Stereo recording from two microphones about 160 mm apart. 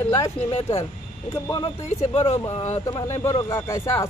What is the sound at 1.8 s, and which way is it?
Speech, 40° left (ahead or behind).